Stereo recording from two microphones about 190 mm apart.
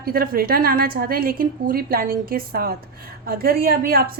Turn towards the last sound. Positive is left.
turn(degrees=-50)  # may be behind; listen again after turning